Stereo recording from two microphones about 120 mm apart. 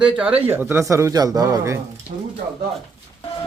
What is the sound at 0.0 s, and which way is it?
A man's voice, 10° right (ahead or behind).